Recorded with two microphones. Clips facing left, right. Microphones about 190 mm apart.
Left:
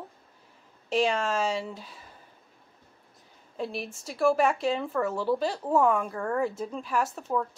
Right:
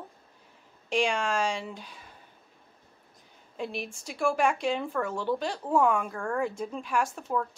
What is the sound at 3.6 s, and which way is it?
Speech, centre (ahead or behind).